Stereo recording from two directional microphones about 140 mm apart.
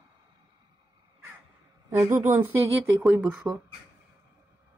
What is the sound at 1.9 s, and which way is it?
Speech, 20° right (ahead or behind).